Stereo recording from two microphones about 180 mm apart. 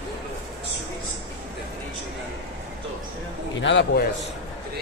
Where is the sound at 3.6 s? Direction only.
90° left.